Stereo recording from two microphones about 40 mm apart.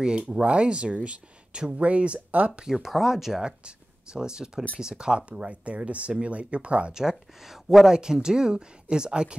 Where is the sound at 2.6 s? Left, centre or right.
Centre.